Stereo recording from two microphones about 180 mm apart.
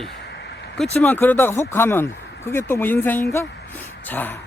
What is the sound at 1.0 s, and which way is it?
Speech, 10° left (ahead or behind).